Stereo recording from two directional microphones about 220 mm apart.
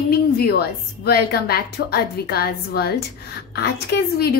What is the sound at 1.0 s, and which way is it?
A woman's voice, 45° left (ahead or behind).